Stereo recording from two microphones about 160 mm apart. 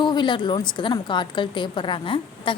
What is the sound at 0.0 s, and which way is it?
A woman's voice, 30° left (ahead or behind).